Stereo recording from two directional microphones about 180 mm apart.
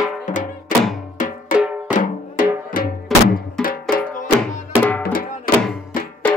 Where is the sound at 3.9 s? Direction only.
45° left (ahead or behind).